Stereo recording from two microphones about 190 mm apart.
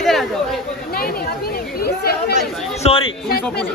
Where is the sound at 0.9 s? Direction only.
50° left (ahead or behind).